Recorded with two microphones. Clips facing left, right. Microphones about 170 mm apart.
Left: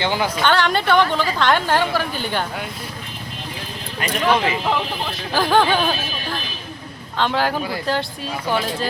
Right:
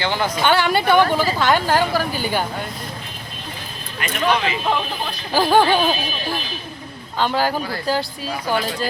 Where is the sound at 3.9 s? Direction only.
35° left (ahead or behind).